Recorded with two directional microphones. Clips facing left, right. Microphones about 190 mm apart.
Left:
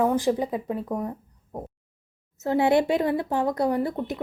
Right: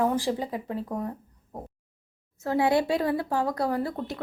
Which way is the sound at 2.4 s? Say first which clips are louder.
Left 3 dB; 25° left (ahead or behind).